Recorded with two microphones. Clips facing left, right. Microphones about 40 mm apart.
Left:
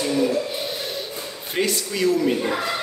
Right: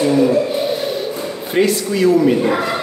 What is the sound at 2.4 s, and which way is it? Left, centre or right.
Speech, right.